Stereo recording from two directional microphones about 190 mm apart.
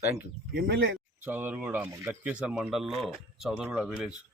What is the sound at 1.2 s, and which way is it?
Speech, 10° right (ahead or behind).